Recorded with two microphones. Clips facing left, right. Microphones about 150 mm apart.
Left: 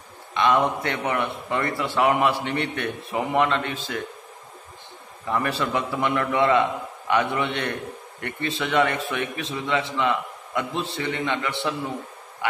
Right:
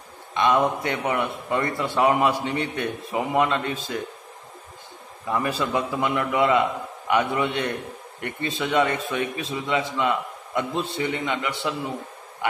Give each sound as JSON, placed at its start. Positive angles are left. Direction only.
{"t": 0.3, "sound": "a man's voice", "side_deg": -15}
{"t": 5.3, "sound": "a man's voice", "side_deg": -15}